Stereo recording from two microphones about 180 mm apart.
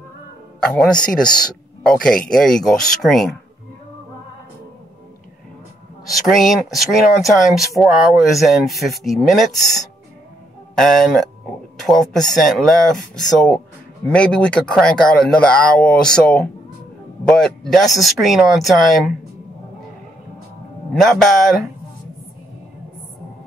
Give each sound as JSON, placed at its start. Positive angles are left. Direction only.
{"t": 0.6, "sound": "speech", "side_deg": 5}
{"t": 1.2, "sound": "speech", "side_deg": 25}
{"t": 1.8, "sound": "speech", "side_deg": 5}
{"t": 6.0, "sound": "speech", "side_deg": 0}
{"t": 20.9, "sound": "speech", "side_deg": 0}